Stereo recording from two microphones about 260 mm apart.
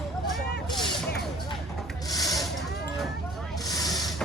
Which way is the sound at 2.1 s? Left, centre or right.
Centre.